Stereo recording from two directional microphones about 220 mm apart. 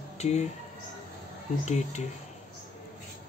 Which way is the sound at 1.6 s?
30° left (ahead or behind).